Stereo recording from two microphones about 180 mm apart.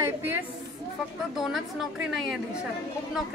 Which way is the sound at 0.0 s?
15° right (ahead or behind).